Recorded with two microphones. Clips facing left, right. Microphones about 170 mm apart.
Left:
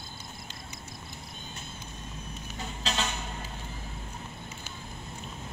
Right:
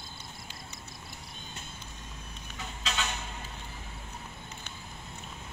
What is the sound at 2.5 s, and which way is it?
Vehicle, 35° left (ahead or behind).